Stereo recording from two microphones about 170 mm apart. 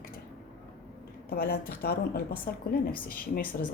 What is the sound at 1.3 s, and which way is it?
A woman's voice, 60° left (ahead or behind).